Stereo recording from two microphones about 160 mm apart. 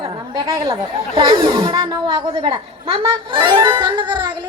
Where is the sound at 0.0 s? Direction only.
35° right (ahead or behind).